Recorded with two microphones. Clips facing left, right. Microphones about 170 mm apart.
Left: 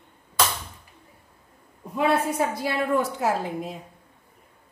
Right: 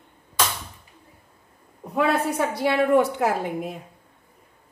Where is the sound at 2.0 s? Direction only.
70° right (ahead or behind).